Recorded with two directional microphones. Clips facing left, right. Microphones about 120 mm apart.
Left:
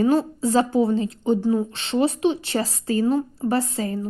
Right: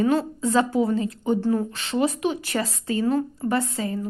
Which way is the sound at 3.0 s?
30° left (ahead or behind).